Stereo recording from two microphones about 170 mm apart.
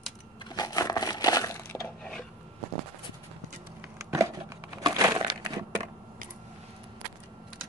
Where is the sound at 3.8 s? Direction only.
15° right (ahead or behind).